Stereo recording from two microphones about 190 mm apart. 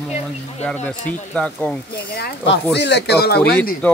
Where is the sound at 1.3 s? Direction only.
5° left (ahead or behind).